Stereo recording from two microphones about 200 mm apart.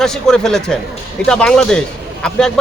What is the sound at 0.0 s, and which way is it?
A man's voice, 5° left (ahead or behind).